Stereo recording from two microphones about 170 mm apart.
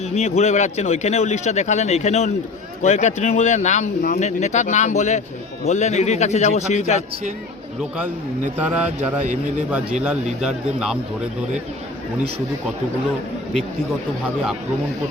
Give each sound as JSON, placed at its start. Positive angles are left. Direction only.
{"t": 0.0, "sound": "a man's voice", "side_deg": 40}
{"t": 7.8, "sound": "speech", "side_deg": -5}
{"t": 10.4, "sound": "speech", "side_deg": -5}